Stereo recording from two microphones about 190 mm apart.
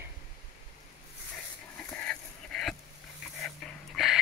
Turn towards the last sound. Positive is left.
turn(degrees=0)  # may be behind; listen again after turning